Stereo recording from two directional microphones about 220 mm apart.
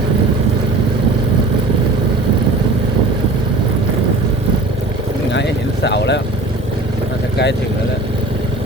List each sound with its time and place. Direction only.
5.3 s vehicle: 50° left (ahead or behind)